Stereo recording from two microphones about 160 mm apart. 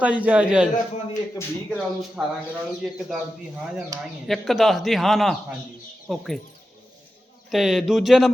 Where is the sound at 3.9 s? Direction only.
20° right (ahead or behind).